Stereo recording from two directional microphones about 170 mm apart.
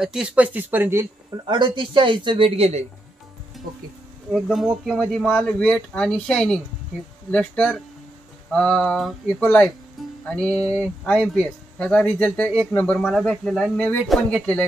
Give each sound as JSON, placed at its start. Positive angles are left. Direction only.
{"t": 0.0, "sound": "speech", "side_deg": -5}
{"t": 1.3, "sound": "speech", "side_deg": -25}
{"t": 3.6, "sound": "music", "side_deg": 0}
{"t": 4.3, "sound": "speech", "side_deg": 0}